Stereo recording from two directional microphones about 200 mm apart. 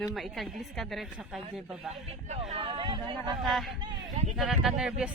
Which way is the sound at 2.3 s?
30° right (ahead or behind).